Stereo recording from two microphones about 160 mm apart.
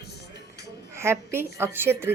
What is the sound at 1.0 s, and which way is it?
A woman's voice, 15° right (ahead or behind).